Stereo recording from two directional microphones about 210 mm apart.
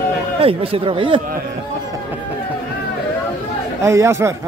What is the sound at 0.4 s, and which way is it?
Speech, 25° right (ahead or behind).